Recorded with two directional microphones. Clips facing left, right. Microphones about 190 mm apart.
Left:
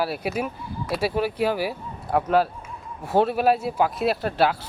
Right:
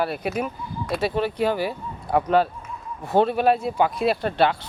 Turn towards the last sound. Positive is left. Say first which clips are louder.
# right 1 dB
turn(degrees=5)  # may be behind; listen again after turning